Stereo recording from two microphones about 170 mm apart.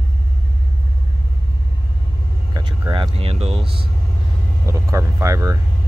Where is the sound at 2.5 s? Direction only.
25° right (ahead or behind).